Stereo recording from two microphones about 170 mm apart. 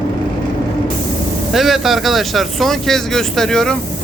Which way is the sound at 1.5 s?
Centre (ahead or behind).